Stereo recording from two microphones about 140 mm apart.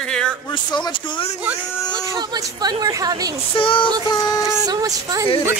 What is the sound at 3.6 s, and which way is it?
Speech, 40° left (ahead or behind).